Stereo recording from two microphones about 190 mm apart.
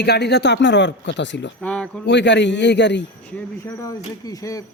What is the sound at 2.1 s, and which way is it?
Speech, 65° left (ahead or behind).